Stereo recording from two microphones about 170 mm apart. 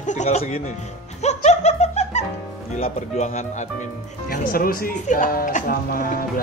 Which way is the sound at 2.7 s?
40° left (ahead or behind).